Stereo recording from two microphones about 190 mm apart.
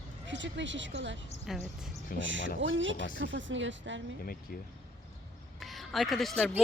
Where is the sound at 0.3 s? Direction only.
75° right (ahead or behind).